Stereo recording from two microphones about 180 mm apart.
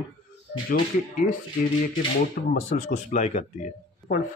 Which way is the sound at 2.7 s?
45° left (ahead or behind).